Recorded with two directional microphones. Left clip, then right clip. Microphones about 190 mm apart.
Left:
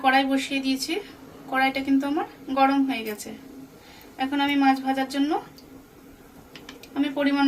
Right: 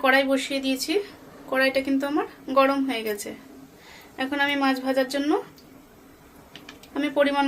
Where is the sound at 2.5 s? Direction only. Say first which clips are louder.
Right 1 dB; 65° right (ahead or behind).